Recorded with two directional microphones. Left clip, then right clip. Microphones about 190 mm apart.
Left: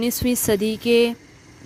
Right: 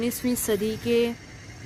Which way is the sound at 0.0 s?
40° left (ahead or behind).